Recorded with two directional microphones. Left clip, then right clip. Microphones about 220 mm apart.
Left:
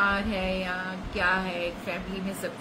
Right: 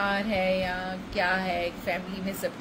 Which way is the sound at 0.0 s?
15° left (ahead or behind).